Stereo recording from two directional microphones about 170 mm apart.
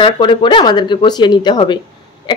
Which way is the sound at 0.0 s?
30° left (ahead or behind).